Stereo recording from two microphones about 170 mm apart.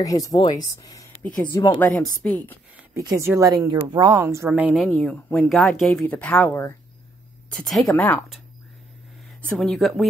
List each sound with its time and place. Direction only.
0.0 s speech: 20° left (ahead or behind)
1.2 s a woman's voice: 10° left (ahead or behind)
2.9 s a woman's voice: 20° right (ahead or behind); by 8.3 s 10° left (ahead or behind)
9.6 s speech: centre (ahead or behind)